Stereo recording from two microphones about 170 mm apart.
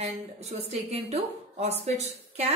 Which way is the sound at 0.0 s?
40° right (ahead or behind).